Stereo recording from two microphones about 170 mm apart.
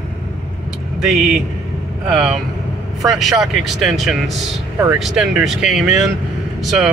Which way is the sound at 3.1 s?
Centre (ahead or behind).